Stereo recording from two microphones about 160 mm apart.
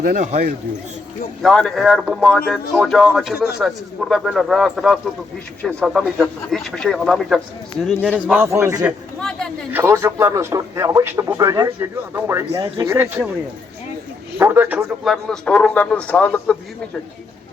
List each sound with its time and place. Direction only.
0.0 s a man's voice: 60° right (ahead or behind)
1.4 s speech: centre (ahead or behind)
3.3 s a man's voice: 75° left (ahead or behind)
3.6 s speech: centre (ahead or behind)
8.3 s a man's voice: 15° right (ahead or behind)
12.5 s speech: 30° right (ahead or behind); by 13.3 s 10° right (ahead or behind)
14.3 s speech: 15° right (ahead or behind); by 16.6 s 10° left (ahead or behind)